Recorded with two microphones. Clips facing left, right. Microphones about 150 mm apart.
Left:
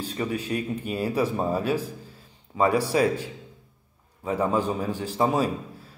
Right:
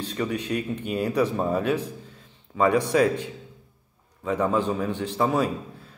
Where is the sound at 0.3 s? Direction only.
35° left (ahead or behind).